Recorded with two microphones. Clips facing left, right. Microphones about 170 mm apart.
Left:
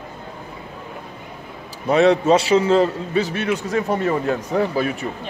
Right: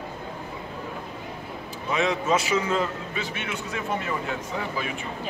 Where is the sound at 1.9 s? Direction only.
35° left (ahead or behind).